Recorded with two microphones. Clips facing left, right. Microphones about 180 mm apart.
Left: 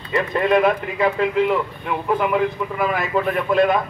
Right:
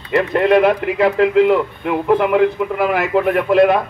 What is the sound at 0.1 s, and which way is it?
Speech, 65° right (ahead or behind).